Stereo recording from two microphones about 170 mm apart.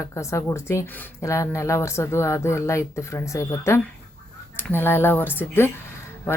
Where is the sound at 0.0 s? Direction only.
15° left (ahead or behind).